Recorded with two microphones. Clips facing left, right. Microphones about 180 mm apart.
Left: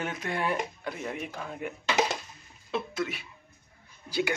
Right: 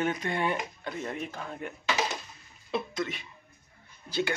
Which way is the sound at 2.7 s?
5° left (ahead or behind).